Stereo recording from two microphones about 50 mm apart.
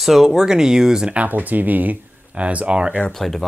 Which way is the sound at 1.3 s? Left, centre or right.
Right.